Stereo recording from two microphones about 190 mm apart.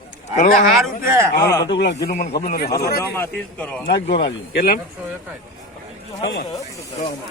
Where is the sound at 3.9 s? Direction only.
60° left (ahead or behind).